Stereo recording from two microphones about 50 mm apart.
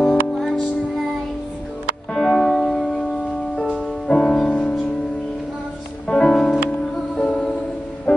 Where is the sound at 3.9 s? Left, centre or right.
Centre.